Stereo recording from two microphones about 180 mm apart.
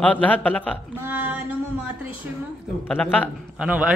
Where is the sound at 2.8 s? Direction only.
10° left (ahead or behind).